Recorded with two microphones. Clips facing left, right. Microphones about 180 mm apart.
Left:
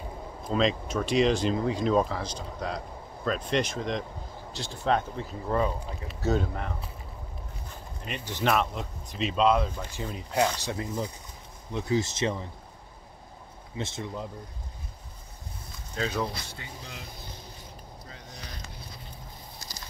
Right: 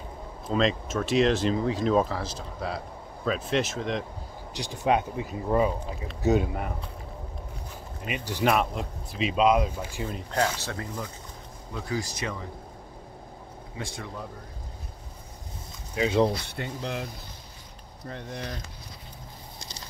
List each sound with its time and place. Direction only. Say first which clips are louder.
0.5 s speech: right 1 dB; centre (ahead or behind)
4.6 s speech: right 2 dB; 15° right (ahead or behind)
8.0 s speech: right 3 dB; 10° right (ahead or behind)
10.1 s speech: left 2 dB; 10° left (ahead or behind); by 12.4 s 25° left (ahead or behind)
13.7 s speech: left 3 dB; 25° left (ahead or behind)
16.0 s speech: right 7 dB; 25° right (ahead or behind)
16.4 s speech: right 10 dB; 65° right (ahead or behind)
18.0 s speech: right 13 dB; 60° right (ahead or behind)